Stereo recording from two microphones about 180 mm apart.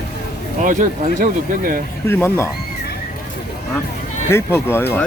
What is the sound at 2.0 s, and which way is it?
Speech, 15° left (ahead or behind).